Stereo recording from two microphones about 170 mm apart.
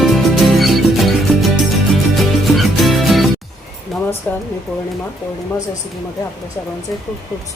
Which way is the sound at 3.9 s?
Centre (ahead or behind).